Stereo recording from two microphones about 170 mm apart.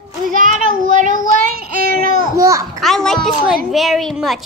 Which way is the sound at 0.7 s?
50° right (ahead or behind).